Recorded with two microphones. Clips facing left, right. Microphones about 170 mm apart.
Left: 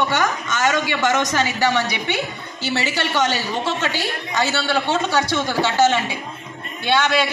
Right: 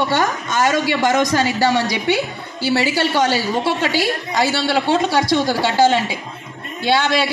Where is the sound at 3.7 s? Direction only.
10° right (ahead or behind).